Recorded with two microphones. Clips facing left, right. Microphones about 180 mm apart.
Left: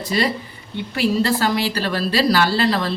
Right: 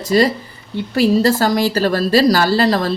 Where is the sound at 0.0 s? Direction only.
40° right (ahead or behind).